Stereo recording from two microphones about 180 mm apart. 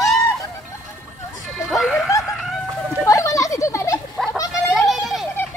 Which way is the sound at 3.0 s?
15° left (ahead or behind).